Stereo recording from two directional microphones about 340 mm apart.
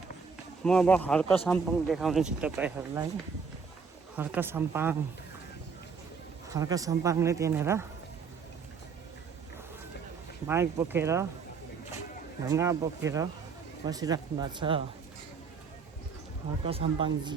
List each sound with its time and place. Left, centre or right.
0.6 s speech: centre
4.1 s speech: centre
6.5 s speech: centre
10.4 s speech: centre
12.5 s speech: centre
16.6 s speech: centre